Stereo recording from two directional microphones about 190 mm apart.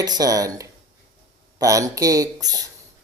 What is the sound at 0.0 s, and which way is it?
Speech, 20° right (ahead or behind).